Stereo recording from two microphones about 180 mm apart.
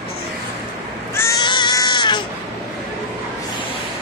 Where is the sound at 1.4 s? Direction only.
25° left (ahead or behind).